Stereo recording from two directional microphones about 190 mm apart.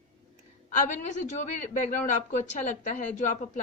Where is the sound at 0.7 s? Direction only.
40° left (ahead or behind).